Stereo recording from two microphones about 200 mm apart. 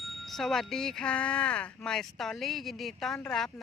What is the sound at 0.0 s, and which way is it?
Speech, centre (ahead or behind).